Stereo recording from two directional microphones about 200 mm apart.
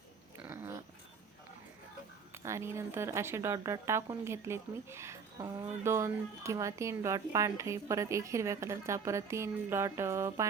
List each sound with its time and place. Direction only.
0.4 s dog: 10° right (ahead or behind)
2.3 s speech: 15° right (ahead or behind)